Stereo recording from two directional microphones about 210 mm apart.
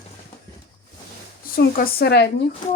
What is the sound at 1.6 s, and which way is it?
Speech, 45° left (ahead or behind).